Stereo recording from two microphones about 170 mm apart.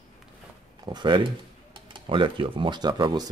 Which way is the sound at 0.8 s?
25° right (ahead or behind).